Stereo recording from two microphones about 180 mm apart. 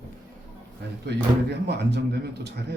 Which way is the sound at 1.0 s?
65° right (ahead or behind).